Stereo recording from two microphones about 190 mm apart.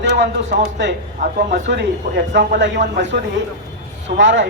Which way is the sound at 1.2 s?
45° right (ahead or behind).